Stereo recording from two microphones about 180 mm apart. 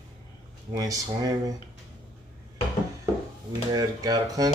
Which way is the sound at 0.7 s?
20° right (ahead or behind).